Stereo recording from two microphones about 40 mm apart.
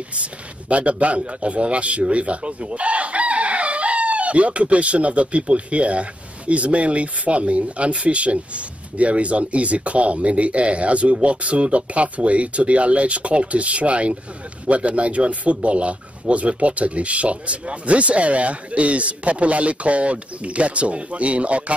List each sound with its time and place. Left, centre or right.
0.1 s chicken: right